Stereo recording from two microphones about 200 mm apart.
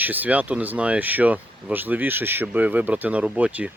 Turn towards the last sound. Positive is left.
turn(degrees=-5)  # may be behind; listen again after turning